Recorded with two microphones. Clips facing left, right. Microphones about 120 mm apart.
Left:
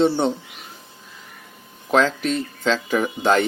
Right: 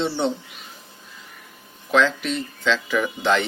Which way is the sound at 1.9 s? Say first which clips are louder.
Left 1 dB; 40° left (ahead or behind).